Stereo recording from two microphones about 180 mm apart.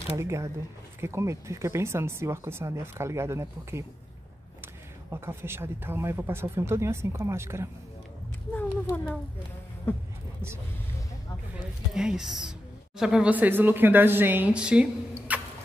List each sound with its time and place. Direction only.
0.2 s speech: 15° right (ahead or behind)
5.1 s speech: 15° right (ahead or behind)
8.5 s a child's voice: 10° left (ahead or behind)
11.9 s speech: 5° right (ahead or behind)